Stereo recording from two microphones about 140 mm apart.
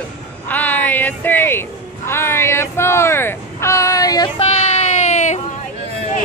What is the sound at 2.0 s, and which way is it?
Vehicle, 15° left (ahead or behind).